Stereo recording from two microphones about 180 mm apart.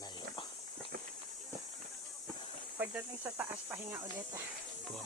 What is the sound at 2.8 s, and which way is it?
Speech, 10° right (ahead or behind).